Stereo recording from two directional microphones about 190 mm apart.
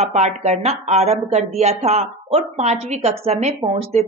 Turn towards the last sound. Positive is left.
turn(degrees=-35)  # may be behind; listen again after turning